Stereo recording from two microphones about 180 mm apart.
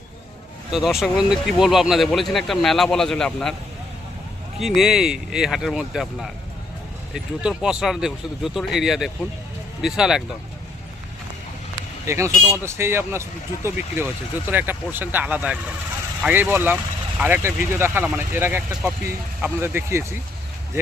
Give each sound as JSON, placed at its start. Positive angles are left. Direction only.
{"t": 0.7, "sound": "speech", "side_deg": -5}
{"t": 4.6, "sound": "speech", "side_deg": 0}
{"t": 12.0, "sound": "speech", "side_deg": -15}